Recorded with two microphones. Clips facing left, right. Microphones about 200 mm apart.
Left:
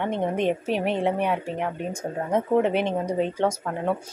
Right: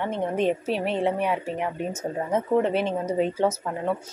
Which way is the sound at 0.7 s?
50° left (ahead or behind).